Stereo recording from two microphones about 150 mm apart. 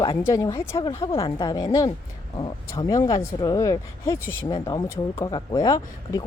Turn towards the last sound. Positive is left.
turn(degrees=25)  # may be behind; listen again after turning